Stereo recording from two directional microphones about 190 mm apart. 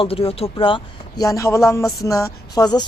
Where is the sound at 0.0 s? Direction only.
30° left (ahead or behind).